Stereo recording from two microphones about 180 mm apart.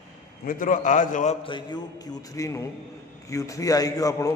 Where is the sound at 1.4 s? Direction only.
25° left (ahead or behind).